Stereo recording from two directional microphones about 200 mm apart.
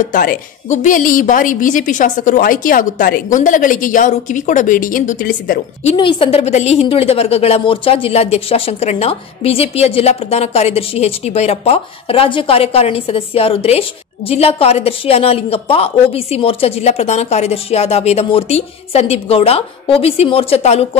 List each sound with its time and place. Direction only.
0.0 s a woman's voice: 45° left (ahead or behind)
5.9 s a woman's voice: 25° left (ahead or behind)